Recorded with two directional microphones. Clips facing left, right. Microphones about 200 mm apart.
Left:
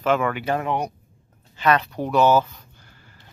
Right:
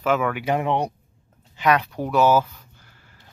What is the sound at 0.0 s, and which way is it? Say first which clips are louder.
Speech: even; 5° right (ahead or behind).